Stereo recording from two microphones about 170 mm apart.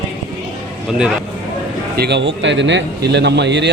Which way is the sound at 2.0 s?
90° right.